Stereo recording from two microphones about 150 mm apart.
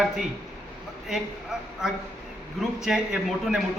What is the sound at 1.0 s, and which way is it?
A man's voice, 5° right (ahead or behind).